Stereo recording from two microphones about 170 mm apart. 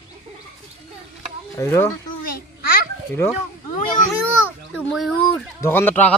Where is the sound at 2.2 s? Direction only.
60° left (ahead or behind).